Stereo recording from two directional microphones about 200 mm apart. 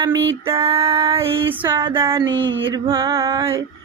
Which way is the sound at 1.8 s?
25° right (ahead or behind).